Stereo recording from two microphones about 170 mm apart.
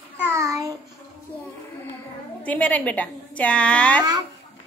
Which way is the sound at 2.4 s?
10° left (ahead or behind).